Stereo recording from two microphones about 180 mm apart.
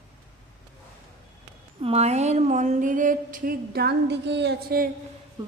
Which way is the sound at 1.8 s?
35° right (ahead or behind).